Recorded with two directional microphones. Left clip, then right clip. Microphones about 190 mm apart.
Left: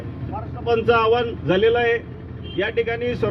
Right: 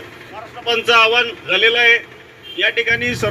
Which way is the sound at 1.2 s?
25° right (ahead or behind).